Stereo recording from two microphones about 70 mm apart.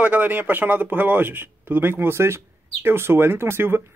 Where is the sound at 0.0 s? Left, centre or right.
Right.